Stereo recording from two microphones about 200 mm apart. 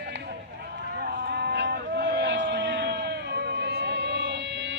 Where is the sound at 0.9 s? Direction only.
50° right (ahead or behind).